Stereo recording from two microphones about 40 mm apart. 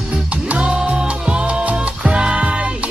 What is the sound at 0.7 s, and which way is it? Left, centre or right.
Music, right.